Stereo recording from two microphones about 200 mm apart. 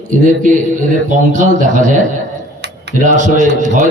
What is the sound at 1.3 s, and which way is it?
A man's voice, 40° right (ahead or behind).